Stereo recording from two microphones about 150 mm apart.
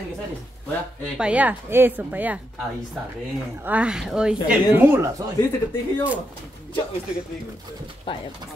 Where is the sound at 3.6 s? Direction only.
10° right (ahead or behind).